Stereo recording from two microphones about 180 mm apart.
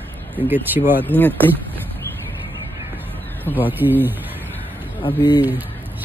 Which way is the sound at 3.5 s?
10° left (ahead or behind).